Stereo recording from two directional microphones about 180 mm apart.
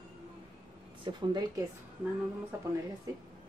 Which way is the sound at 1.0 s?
25° right (ahead or behind).